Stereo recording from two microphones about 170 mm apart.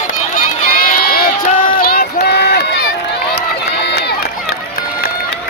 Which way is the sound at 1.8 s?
65° left (ahead or behind).